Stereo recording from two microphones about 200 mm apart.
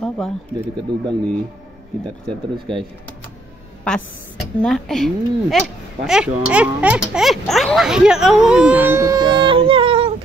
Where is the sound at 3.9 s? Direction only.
5° left (ahead or behind).